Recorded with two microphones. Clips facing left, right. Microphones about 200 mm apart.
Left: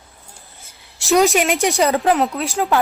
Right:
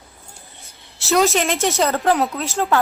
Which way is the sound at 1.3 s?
15° left (ahead or behind).